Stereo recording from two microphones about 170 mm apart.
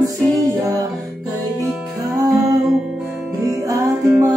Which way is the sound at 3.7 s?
20° right (ahead or behind).